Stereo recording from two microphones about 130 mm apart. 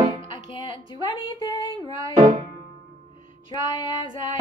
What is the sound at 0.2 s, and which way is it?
Speech, 40° left (ahead or behind).